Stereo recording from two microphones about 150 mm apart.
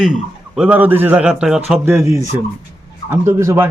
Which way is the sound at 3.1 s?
20° right (ahead or behind).